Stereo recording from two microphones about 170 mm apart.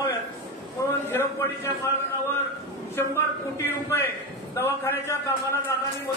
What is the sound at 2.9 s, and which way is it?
A man's voice, 15° left (ahead or behind).